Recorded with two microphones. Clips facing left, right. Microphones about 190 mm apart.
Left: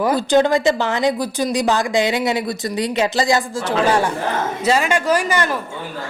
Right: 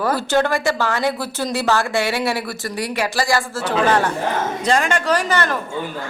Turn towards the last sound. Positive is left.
turn(degrees=10)  # may be behind; listen again after turning